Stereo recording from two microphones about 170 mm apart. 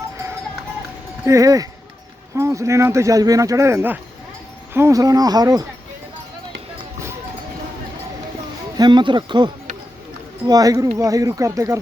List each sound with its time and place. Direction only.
1.2 s speech: 20° right (ahead or behind)
8.8 s speech: 25° right (ahead or behind)